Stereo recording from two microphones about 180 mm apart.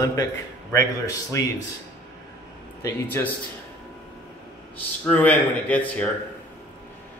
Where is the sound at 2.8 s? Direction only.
10° left (ahead or behind).